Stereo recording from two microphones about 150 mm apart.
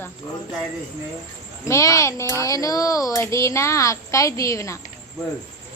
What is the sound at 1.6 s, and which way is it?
Speech, 20° left (ahead or behind).